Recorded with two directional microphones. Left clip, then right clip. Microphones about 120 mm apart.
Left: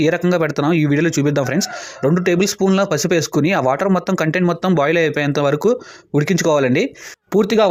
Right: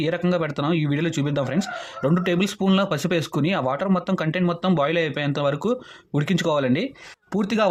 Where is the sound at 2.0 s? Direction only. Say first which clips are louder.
Left 7 dB; 30° left (ahead or behind).